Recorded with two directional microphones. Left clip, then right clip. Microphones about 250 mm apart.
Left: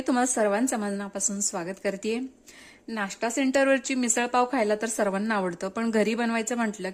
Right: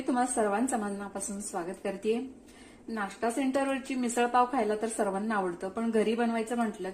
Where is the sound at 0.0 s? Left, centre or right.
Left.